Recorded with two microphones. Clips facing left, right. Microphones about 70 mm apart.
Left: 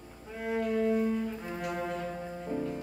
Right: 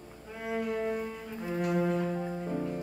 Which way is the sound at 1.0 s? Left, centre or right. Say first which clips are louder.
Left 5 dB; centre.